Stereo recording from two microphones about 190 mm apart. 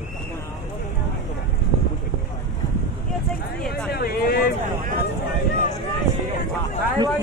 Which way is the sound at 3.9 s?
55° left (ahead or behind).